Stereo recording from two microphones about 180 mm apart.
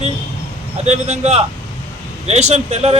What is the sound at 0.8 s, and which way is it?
Speech, 35° right (ahead or behind).